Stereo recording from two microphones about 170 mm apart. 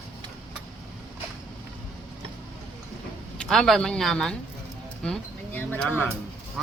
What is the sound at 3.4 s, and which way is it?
Speech, 5° left (ahead or behind).